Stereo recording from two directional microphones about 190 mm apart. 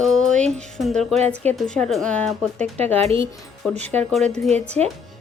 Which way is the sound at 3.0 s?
30° right (ahead or behind).